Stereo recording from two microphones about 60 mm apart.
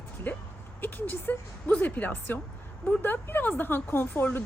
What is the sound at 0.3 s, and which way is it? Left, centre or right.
A woman's voice, left.